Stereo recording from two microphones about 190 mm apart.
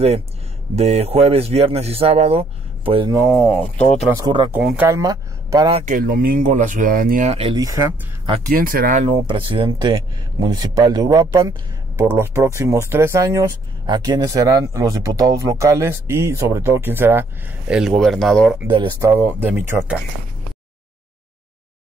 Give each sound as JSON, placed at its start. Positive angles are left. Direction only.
{"t": 0.7, "sound": "speech", "side_deg": -35}
{"t": 3.3, "sound": "speech", "side_deg": 5}
{"t": 4.2, "sound": "speech", "side_deg": -25}
{"t": 4.5, "sound": "speech", "side_deg": -5}
{"t": 4.8, "sound": "speech", "side_deg": -15}
{"t": 5.9, "sound": "speech", "side_deg": -50}
{"t": 7.5, "sound": "speech", "side_deg": -20}
{"t": 8.5, "sound": "speech", "side_deg": -50}
{"t": 9.3, "sound": "speech", "side_deg": -25}
{"t": 18.7, "sound": "speech", "side_deg": -25}